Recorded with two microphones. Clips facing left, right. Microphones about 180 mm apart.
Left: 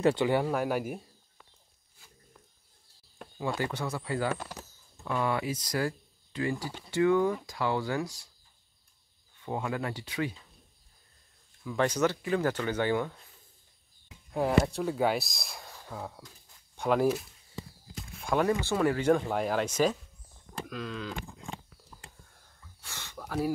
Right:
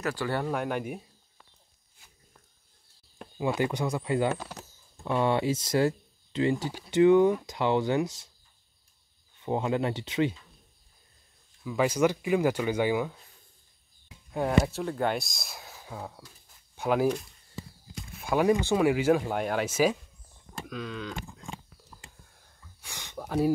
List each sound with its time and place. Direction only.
0.0 s speech: 20° left (ahead or behind)
0.4 s speech: 5° left (ahead or behind)
3.3 s speech: 15° right (ahead or behind)
4.4 s speech: 10° right (ahead or behind)
5.0 s speech: 25° right (ahead or behind)
9.4 s speech: 25° right (ahead or behind)
11.6 s speech: 5° right (ahead or behind)
14.3 s speech: centre (ahead or behind)
20.6 s a sound: centre (ahead or behind)
22.8 s a sound: 15° right (ahead or behind)